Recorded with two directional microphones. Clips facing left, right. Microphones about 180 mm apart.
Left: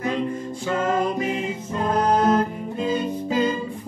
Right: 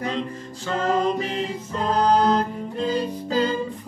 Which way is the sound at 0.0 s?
10° left (ahead or behind).